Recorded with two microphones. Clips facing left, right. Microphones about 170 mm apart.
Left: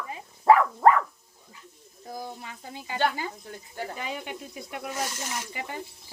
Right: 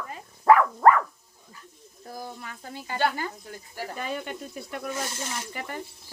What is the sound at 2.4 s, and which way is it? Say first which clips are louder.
Speech: right 1 dB; 15° left (ahead or behind).